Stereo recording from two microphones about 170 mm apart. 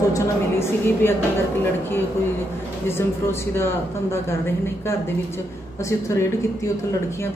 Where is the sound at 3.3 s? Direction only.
15° left (ahead or behind).